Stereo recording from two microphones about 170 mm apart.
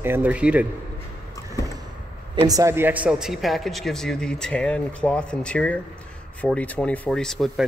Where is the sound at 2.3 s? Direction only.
25° right (ahead or behind).